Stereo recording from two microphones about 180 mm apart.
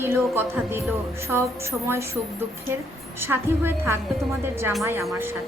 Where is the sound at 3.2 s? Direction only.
10° right (ahead or behind).